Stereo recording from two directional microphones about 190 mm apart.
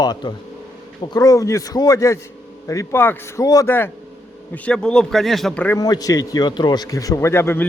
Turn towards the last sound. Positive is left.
turn(degrees=15)  # may be behind; listen again after turning